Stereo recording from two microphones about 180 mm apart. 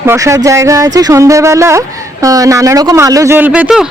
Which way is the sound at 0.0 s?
15° right (ahead or behind).